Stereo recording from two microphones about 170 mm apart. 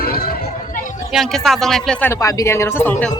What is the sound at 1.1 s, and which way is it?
Speech, centre (ahead or behind).